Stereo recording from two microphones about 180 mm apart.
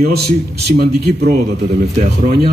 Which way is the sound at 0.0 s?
60° right (ahead or behind).